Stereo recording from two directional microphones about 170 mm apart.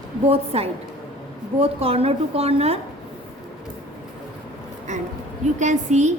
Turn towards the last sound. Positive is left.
turn(degrees=-45)  # may be behind; listen again after turning